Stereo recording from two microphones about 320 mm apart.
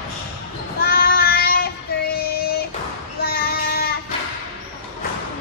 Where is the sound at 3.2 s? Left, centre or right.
Left.